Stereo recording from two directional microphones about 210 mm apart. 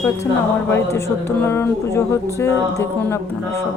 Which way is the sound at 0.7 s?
10° left (ahead or behind).